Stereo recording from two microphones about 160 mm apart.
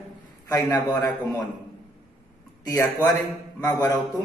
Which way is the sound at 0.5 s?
20° left (ahead or behind).